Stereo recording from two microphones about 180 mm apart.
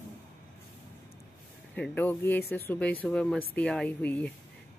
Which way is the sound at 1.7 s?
5° left (ahead or behind).